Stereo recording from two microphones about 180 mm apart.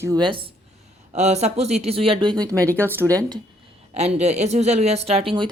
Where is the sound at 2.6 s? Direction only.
10° left (ahead or behind).